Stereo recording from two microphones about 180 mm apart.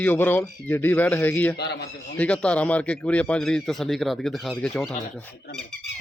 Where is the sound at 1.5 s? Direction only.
65° left (ahead or behind).